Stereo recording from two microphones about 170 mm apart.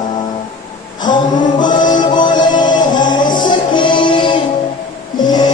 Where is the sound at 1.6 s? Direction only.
25° left (ahead or behind).